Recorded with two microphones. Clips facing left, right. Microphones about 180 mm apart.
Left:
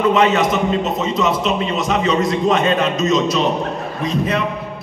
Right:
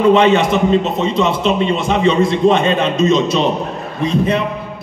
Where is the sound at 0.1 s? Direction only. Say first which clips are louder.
Right 4 dB; 30° right (ahead or behind).